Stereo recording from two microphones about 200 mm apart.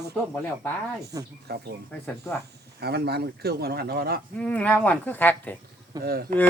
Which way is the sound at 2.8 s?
55° right (ahead or behind).